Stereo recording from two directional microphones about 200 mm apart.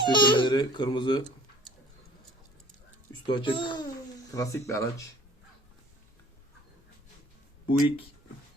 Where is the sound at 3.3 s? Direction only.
25° left (ahead or behind).